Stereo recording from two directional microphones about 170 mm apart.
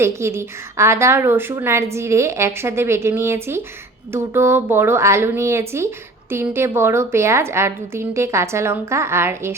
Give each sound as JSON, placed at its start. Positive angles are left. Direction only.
{"t": 0.0, "sound": "a woman's voice", "side_deg": -15}